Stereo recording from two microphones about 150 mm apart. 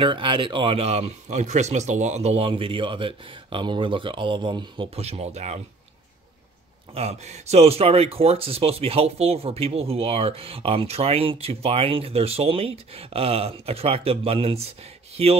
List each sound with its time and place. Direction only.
0.0 s speech: 35° right (ahead or behind)
6.9 s speech: 45° right (ahead or behind)